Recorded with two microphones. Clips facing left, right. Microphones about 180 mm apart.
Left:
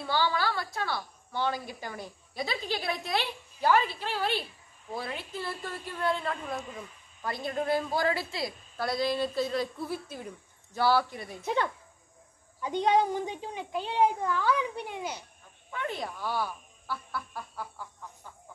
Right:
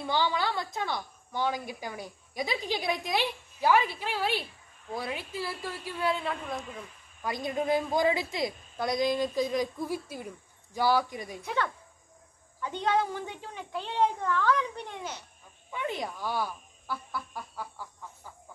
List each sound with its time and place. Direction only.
0.0 s a woman's voice: 20° right (ahead or behind); by 6.6 s centre (ahead or behind)
7.2 s a woman's voice: 15° right (ahead or behind)
11.4 s a child's voice: 20° left (ahead or behind)
15.7 s a woman's voice: 15° right (ahead or behind)
17.1 s chicken: 10° right (ahead or behind)